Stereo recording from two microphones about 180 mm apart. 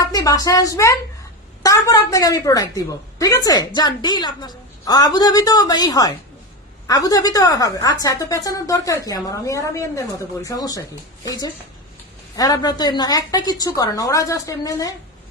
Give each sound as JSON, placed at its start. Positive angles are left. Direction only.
{"t": 0.1, "sound": "a woman's voice", "side_deg": 20}